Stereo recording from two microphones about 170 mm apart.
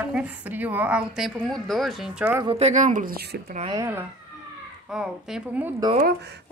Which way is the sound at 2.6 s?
45° right (ahead or behind).